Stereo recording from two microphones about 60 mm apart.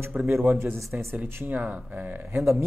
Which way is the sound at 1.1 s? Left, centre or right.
Right.